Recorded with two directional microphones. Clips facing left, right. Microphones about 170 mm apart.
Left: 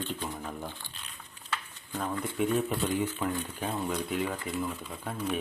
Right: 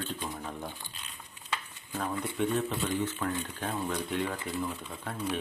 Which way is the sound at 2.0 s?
Centre (ahead or behind).